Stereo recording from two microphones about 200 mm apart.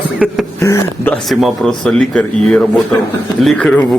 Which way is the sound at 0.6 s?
15° left (ahead or behind).